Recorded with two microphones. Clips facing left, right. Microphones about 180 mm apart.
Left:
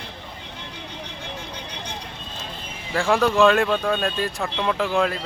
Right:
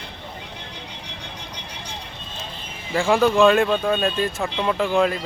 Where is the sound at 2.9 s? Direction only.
Centre (ahead or behind).